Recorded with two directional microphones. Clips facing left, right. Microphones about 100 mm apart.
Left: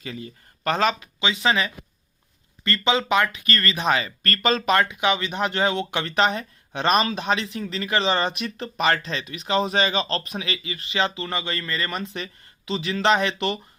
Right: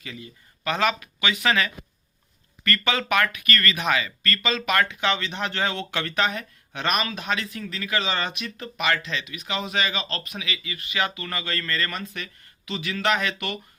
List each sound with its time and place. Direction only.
0.0 s speech: 35° left (ahead or behind)
4.8 s speech: 15° left (ahead or behind)